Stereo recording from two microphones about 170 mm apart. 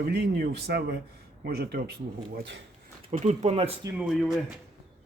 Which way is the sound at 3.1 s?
45° right (ahead or behind).